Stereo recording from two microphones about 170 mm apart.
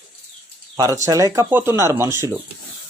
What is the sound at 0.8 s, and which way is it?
Speech, 20° right (ahead or behind).